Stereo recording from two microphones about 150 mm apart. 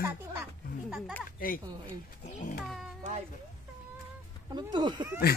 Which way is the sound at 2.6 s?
Centre (ahead or behind).